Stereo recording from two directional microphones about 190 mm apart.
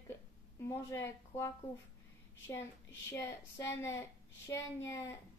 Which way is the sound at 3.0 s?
15° left (ahead or behind).